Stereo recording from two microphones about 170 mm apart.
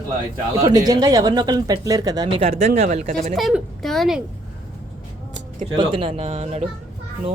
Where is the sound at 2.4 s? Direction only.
35° right (ahead or behind); by 3.3 s 55° right (ahead or behind).